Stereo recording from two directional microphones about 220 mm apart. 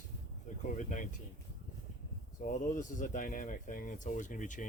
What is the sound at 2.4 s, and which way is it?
Speech, 35° left (ahead or behind).